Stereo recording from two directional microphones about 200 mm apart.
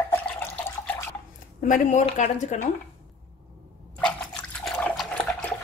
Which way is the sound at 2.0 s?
35° left (ahead or behind).